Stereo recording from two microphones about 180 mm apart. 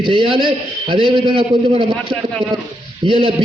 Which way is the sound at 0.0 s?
30° right (ahead or behind).